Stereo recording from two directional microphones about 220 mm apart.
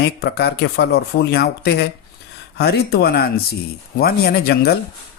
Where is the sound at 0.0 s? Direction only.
50° left (ahead or behind).